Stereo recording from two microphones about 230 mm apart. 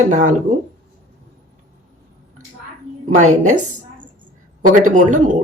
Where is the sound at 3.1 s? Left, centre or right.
Right.